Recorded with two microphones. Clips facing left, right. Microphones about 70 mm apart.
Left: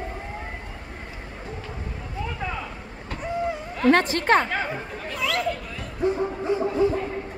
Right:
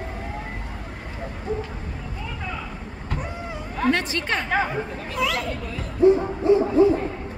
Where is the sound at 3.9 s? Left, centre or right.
Left.